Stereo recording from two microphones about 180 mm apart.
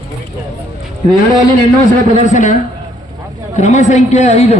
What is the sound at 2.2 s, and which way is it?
A woman's voice, 45° left (ahead or behind).